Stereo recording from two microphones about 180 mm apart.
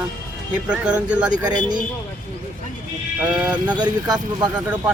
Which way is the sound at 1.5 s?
25° right (ahead or behind).